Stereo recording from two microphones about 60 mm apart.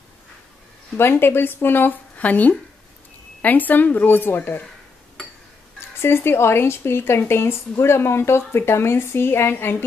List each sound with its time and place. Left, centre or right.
0.9 s a woman's voice: left
5.9 s speech: left